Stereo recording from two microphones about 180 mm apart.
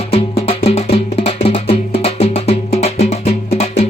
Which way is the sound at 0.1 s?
35° left (ahead or behind).